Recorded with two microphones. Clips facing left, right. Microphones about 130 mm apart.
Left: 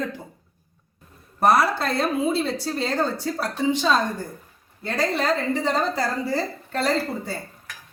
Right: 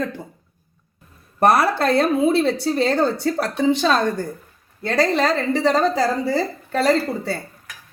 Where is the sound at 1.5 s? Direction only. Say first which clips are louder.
Right 2 dB; 60° right (ahead or behind); by 7.4 s 85° right.